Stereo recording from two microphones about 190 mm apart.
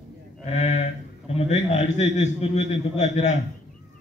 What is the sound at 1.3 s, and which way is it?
A man's voice, 35° left (ahead or behind).